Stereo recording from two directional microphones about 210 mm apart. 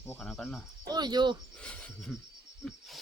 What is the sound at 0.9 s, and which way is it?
Speech, 20° right (ahead or behind).